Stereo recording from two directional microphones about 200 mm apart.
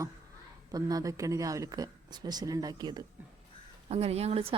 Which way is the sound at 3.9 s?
30° right (ahead or behind).